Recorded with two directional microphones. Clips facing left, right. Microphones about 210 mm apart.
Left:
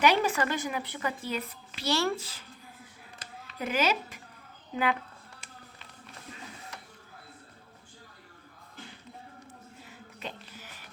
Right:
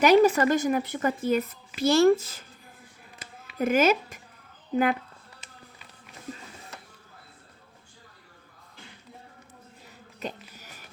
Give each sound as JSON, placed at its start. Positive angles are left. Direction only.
{"t": 0.0, "sound": "a woman's voice", "side_deg": -40}
{"t": 3.6, "sound": "a woman's voice", "side_deg": -50}
{"t": 10.2, "sound": "a sound", "side_deg": -45}